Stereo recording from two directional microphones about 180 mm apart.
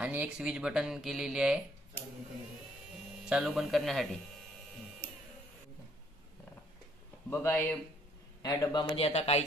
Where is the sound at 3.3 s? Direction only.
5° right (ahead or behind).